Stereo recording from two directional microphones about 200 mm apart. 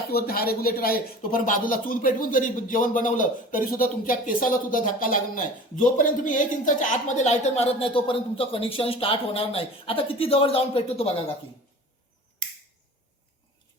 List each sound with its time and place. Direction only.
0.1 s speech: 50° left (ahead or behind); by 11.1 s 30° left (ahead or behind)